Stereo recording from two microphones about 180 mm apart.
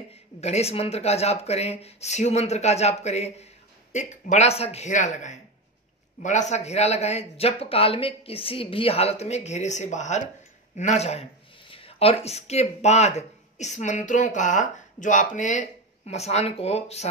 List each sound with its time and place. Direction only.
0.1 s speech: 35° left (ahead or behind)